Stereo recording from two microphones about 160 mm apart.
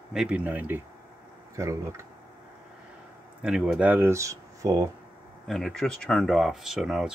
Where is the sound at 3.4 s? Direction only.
5° right (ahead or behind); by 4.9 s 20° right (ahead or behind).